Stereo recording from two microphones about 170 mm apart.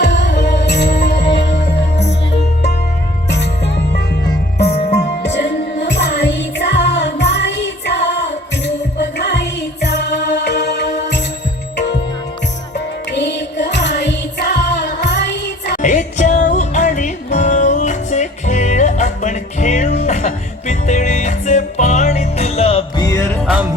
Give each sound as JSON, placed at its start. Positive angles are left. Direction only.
{"t": 0.0, "sound": "music", "side_deg": 90}
{"t": 3.2, "sound": "music", "side_deg": 80}
{"t": 4.7, "sound": "music", "side_deg": 40}
{"t": 4.9, "sound": "music", "side_deg": 90}
{"t": 12.7, "sound": "music", "side_deg": 90}
{"t": 15.8, "sound": "music", "side_deg": 45}
{"t": 23.0, "sound": "music", "side_deg": 20}
{"t": 23.3, "sound": "music", "side_deg": -5}